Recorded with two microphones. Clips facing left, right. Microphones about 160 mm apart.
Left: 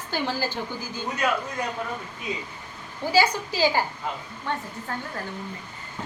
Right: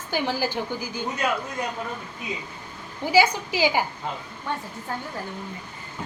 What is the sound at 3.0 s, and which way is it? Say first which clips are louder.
Speech: right 2 dB; 15° right (ahead or behind).